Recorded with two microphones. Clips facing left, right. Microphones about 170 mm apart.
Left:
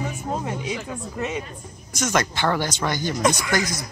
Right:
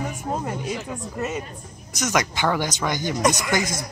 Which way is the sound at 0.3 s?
5° right (ahead or behind).